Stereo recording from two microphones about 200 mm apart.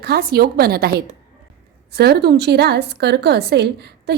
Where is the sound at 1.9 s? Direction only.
55° right (ahead or behind).